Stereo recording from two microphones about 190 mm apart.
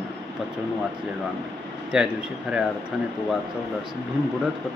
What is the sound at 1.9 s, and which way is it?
Speech, 5° right (ahead or behind).